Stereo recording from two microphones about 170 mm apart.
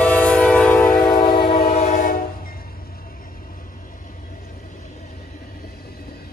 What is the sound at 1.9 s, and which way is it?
Train, 60° left (ahead or behind).